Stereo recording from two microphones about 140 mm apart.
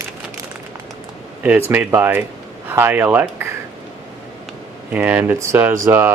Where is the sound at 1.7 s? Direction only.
10° right (ahead or behind).